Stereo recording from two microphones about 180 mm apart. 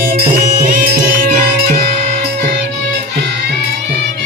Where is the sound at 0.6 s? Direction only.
50° right (ahead or behind).